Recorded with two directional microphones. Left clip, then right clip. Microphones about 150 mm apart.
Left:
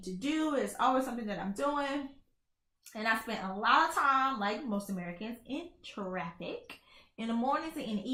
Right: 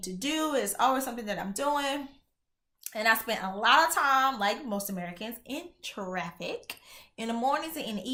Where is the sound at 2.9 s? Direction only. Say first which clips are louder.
Right 6 dB; 20° right (ahead or behind).